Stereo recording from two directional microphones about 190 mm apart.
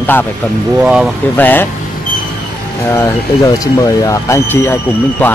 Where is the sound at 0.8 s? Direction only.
5° right (ahead or behind).